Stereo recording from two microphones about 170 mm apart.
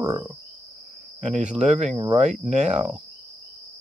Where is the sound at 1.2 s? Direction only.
45° right (ahead or behind).